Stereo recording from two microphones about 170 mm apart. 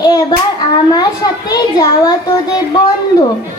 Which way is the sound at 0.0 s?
20° left (ahead or behind).